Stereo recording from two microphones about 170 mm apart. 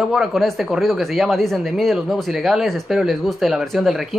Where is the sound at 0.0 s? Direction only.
Centre (ahead or behind).